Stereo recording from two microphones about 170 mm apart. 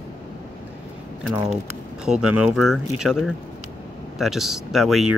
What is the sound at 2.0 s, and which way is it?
Speech, 5° right (ahead or behind).